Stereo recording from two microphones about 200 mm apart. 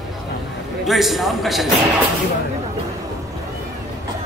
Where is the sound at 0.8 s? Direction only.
Centre (ahead or behind).